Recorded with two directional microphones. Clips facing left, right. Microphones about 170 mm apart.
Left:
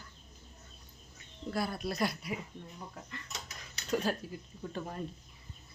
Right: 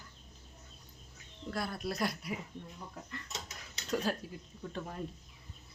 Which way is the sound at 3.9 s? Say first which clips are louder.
Left 2 dB; centre (ahead or behind).